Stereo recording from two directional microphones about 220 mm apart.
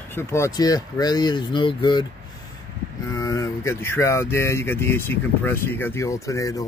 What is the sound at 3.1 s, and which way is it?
Speech, 15° left (ahead or behind).